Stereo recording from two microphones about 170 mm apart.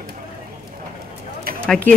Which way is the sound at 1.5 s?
60° right (ahead or behind).